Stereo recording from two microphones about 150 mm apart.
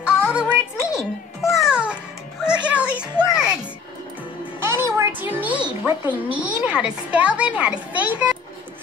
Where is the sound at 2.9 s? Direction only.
5° right (ahead or behind).